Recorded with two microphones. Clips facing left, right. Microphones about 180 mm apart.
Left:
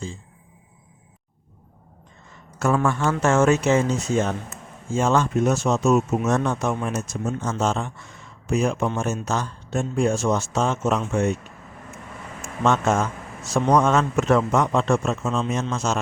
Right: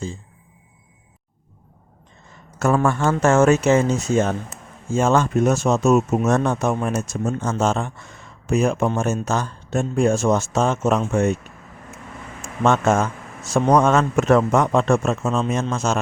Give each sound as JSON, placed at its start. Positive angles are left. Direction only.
{"t": 2.6, "sound": "speech", "side_deg": -45}
{"t": 12.6, "sound": "speech", "side_deg": -50}